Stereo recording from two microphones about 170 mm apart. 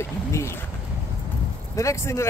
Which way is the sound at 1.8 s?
15° left (ahead or behind).